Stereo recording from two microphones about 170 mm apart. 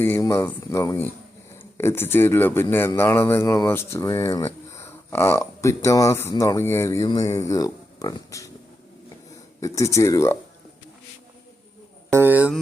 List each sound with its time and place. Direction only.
0.0 s a man's voice: 15° left (ahead or behind)
9.6 s a man's voice: 20° left (ahead or behind)
12.1 s speech: 10° right (ahead or behind)